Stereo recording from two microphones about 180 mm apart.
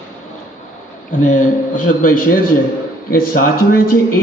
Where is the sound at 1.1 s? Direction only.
45° left (ahead or behind).